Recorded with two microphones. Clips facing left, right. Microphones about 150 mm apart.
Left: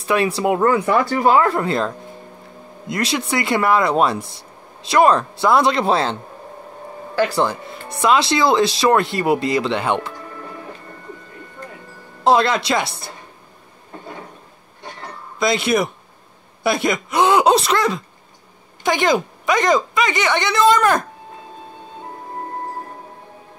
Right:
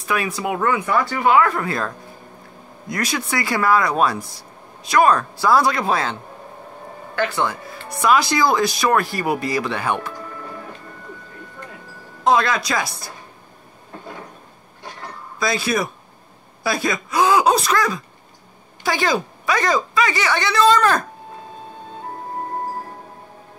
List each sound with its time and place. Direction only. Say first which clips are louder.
0.0 s speech: left 5 dB; 30° left (ahead or behind)
7.2 s speech: left 4 dB; 35° left (ahead or behind)
12.2 s speech: left 2 dB; 30° left (ahead or behind)
15.3 s speech: left 4 dB; 25° left (ahead or behind)